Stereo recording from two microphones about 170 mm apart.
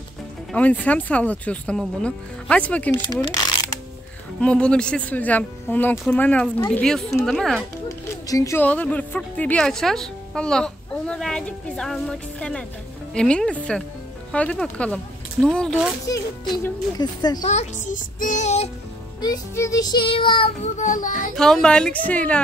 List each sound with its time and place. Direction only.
0.5 s speech: 10° left (ahead or behind)
3.0 s child singing: 25° left (ahead or behind)
4.4 s a woman's voice: 5° left (ahead or behind)
8.3 s a woman's voice: 20° left (ahead or behind)
17.0 s child singing: 25° left (ahead or behind)
17.5 s music: 45° left (ahead or behind)
19.2 s child singing: 20° left (ahead or behind); by 21.1 s 50° left (ahead or behind)
21.4 s a woman's voice: 5° left (ahead or behind)